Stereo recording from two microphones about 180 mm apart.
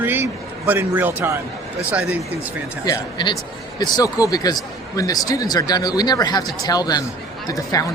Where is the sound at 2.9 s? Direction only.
20° left (ahead or behind).